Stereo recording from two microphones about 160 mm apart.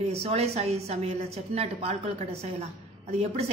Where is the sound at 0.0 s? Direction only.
40° right (ahead or behind).